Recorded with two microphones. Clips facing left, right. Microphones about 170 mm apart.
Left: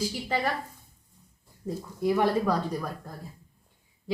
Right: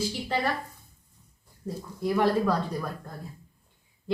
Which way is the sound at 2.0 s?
15° left (ahead or behind).